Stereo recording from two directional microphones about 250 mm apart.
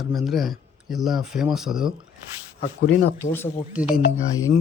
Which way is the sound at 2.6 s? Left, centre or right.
Left.